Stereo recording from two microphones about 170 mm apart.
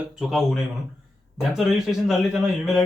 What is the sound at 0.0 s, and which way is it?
Speech, 5° right (ahead or behind).